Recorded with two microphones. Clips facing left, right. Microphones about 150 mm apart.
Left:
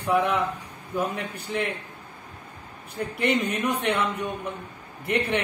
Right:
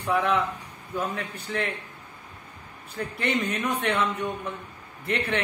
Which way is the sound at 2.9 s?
15° left (ahead or behind).